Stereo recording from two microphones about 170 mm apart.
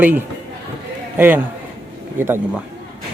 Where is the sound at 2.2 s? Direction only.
10° right (ahead or behind).